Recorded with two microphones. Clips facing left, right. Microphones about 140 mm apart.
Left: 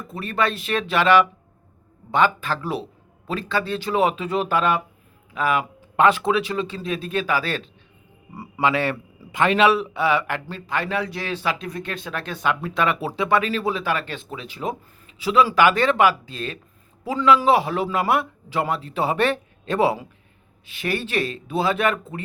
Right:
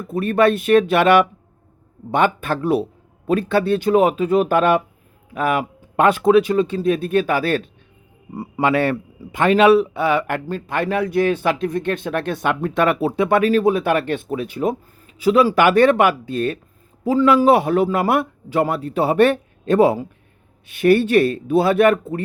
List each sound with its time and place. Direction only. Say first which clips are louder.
0.1 s a man's voice: right 8 dB; 55° right (ahead or behind)